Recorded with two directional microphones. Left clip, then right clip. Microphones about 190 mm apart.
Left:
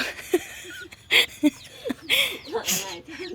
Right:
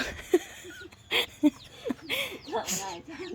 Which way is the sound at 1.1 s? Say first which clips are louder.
Left 6 dB; centre (ahead or behind).